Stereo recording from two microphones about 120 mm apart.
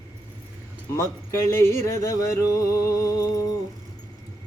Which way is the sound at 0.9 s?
25° left (ahead or behind).